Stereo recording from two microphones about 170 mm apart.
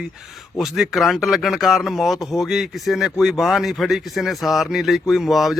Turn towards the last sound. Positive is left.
turn(degrees=0)  # may be behind; listen again after turning